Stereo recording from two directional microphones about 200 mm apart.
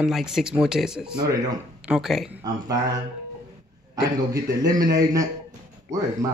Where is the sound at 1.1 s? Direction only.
20° right (ahead or behind).